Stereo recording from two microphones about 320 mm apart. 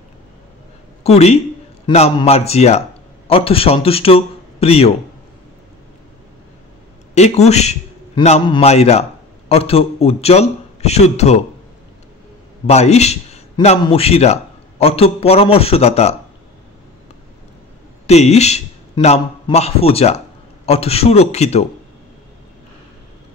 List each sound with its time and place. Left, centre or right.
1.0 s a man's voice: centre
7.2 s a man's voice: left
12.6 s a man's voice: centre
18.0 s a man's voice: centre